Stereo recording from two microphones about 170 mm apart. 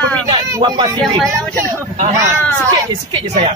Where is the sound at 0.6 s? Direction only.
25° right (ahead or behind).